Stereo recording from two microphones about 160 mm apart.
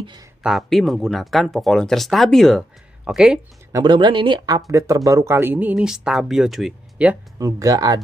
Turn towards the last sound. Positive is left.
turn(degrees=-25)  # may be behind; listen again after turning